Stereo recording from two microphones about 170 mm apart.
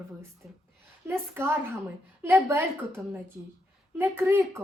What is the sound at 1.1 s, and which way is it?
A woman's voice, 15° right (ahead or behind).